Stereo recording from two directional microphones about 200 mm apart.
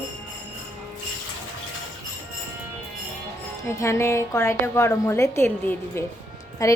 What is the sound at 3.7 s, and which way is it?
A woman's voice, 15° left (ahead or behind).